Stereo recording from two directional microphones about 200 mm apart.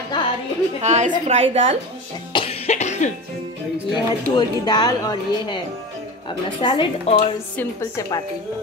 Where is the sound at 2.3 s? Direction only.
30° left (ahead or behind).